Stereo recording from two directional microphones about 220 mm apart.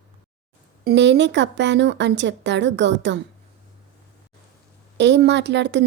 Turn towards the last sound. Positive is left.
turn(degrees=-50)  # may be behind; listen again after turning